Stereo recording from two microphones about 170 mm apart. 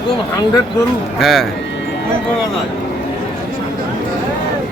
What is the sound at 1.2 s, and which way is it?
Speech, centre (ahead or behind).